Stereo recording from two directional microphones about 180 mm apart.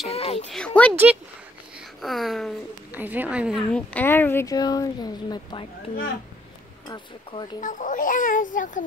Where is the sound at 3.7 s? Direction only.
10° left (ahead or behind); by 7.6 s 25° left (ahead or behind).